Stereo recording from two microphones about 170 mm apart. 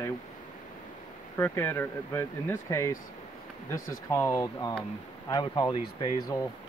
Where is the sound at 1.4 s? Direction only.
15° left (ahead or behind).